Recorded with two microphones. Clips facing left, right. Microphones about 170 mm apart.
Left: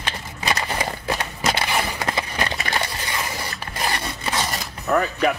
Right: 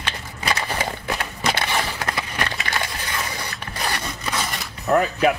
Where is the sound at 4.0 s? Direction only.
35° left (ahead or behind).